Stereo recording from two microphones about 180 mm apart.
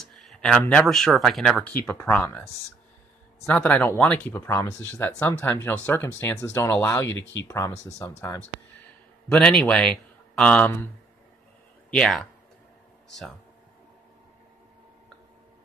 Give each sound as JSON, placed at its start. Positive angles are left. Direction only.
{"t": 0.0, "sound": "speech", "side_deg": 0}
{"t": 9.3, "sound": "speech", "side_deg": 5}
{"t": 11.9, "sound": "speech", "side_deg": 5}